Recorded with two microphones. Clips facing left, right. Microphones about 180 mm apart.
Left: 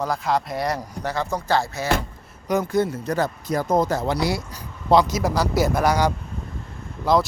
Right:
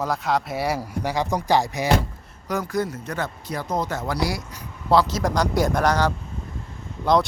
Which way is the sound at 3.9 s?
25° left (ahead or behind).